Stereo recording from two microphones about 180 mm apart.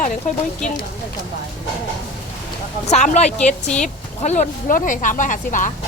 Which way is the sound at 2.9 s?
40° left (ahead or behind).